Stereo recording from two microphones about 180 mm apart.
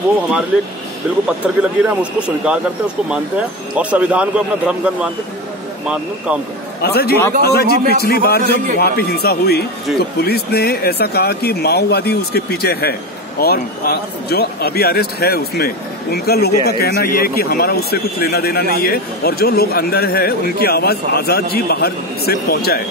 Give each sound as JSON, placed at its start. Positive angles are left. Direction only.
{"t": 1.6, "sound": "speech", "side_deg": -5}
{"t": 6.8, "sound": "speech", "side_deg": 60}